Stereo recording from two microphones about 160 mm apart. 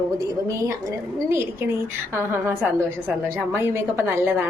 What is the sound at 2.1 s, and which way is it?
A woman's voice, 15° right (ahead or behind).